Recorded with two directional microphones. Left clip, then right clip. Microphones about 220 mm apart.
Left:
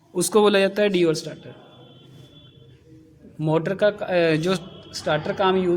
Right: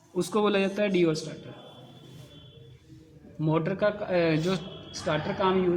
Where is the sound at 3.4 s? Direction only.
50° left (ahead or behind).